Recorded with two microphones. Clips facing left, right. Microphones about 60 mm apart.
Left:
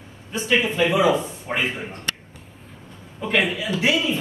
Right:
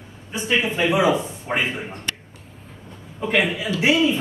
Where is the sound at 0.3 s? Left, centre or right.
Centre.